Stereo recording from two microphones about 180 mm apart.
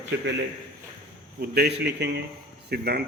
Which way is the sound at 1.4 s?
65° right (ahead or behind).